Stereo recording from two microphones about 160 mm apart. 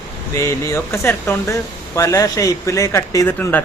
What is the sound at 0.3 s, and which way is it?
Speech, 20° left (ahead or behind).